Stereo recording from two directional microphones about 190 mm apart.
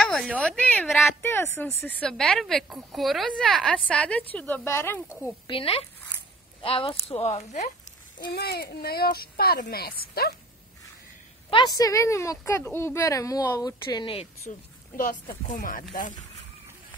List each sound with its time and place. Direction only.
0.0 s a sound: 5° left (ahead or behind)
0.4 s a woman's voice: 5° left (ahead or behind)
5.5 s speech: 30° left (ahead or behind)
8.3 s speech: 55° left (ahead or behind)
11.5 s a woman's voice: 20° left (ahead or behind)
15.0 s speech: 45° left (ahead or behind)